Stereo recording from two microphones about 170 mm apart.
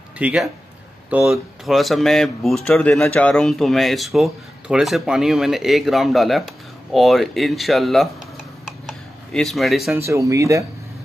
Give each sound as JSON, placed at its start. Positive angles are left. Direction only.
{"t": 0.2, "sound": "speech", "side_deg": -5}
{"t": 8.8, "sound": "a sound", "side_deg": 0}
{"t": 10.0, "sound": "speech", "side_deg": -15}